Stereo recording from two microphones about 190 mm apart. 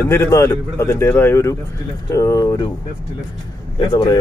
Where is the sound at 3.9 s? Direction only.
20° left (ahead or behind).